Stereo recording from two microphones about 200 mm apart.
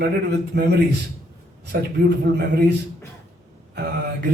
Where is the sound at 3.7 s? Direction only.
55° right (ahead or behind).